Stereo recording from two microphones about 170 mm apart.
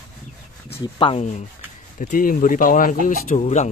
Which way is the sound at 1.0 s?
30° left (ahead or behind).